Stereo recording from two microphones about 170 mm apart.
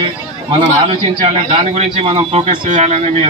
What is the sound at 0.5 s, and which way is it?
A man's voice, 35° right (ahead or behind).